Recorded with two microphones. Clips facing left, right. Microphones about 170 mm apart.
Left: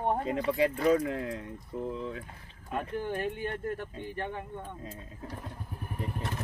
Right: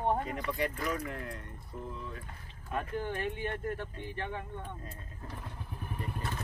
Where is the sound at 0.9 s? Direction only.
90° left.